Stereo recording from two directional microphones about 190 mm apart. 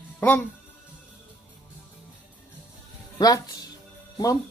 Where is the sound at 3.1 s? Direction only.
20° left (ahead or behind).